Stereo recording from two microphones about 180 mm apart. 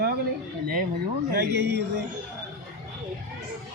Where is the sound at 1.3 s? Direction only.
65° right (ahead or behind).